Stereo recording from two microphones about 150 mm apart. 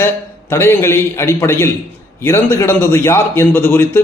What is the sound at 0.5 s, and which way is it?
A man's voice, 15° left (ahead or behind).